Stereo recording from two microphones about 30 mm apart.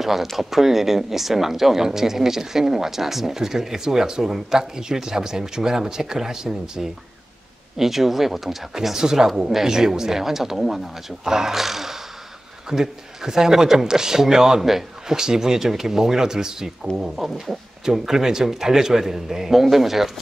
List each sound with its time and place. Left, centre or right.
0.0 s speech: centre
8.9 s speech: centre
11.2 s speech: centre
11.5 s speech: centre
12.6 s speech: right
17.1 s speech: centre